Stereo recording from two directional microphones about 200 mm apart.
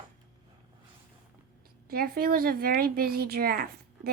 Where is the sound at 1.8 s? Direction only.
50° right (ahead or behind).